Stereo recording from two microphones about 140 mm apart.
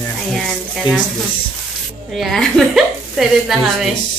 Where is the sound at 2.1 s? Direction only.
Centre (ahead or behind).